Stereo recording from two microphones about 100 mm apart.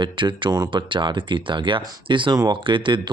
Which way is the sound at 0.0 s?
50° right (ahead or behind).